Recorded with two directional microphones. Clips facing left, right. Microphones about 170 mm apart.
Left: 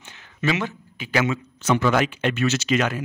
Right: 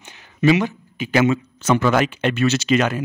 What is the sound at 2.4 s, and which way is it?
Speech, 30° right (ahead or behind).